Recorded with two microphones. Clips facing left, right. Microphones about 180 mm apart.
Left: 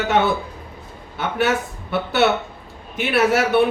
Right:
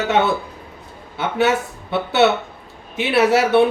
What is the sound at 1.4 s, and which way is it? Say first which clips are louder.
Speech: right 2 dB; 25° right (ahead or behind).